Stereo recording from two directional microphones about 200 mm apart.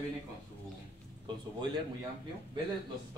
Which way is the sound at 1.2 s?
20° right (ahead or behind).